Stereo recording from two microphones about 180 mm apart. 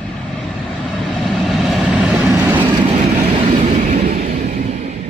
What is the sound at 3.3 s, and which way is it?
Vehicle, 35° right (ahead or behind).